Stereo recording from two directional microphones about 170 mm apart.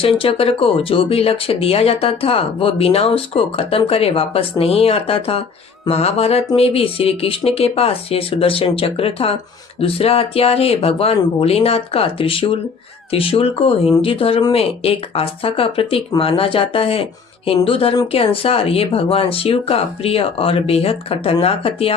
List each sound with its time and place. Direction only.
0.0 s speech: 35° left (ahead or behind)